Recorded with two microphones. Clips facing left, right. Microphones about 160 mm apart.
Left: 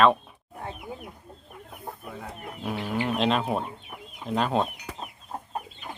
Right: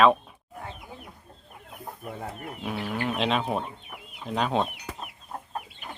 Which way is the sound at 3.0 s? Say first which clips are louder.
Left 1 dB; centre (ahead or behind).